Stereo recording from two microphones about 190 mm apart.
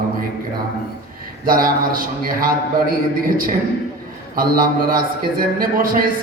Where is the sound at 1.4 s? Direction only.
50° right (ahead or behind).